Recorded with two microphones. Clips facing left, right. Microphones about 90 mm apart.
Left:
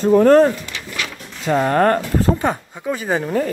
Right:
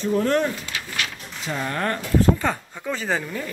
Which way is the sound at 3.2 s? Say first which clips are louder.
Left 11 dB; 45° left (ahead or behind).